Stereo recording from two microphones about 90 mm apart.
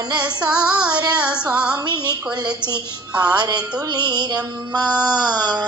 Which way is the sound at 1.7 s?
55° right (ahead or behind).